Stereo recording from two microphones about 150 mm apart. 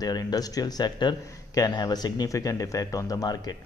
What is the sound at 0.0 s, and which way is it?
Speech, 25° left (ahead or behind).